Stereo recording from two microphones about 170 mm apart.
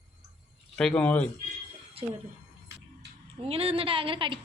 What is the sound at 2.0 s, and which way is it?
Speech, 35° right (ahead or behind).